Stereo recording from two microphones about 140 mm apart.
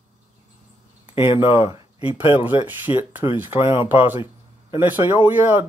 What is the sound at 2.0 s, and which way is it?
Speech, 40° left (ahead or behind).